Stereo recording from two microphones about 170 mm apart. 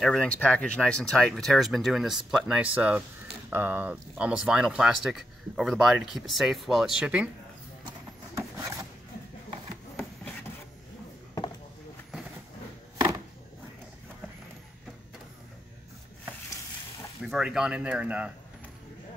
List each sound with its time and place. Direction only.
0.0 s speech: 5° left (ahead or behind)
8.4 s a sound: 20° right (ahead or behind)
17.2 s speech: 5° right (ahead or behind)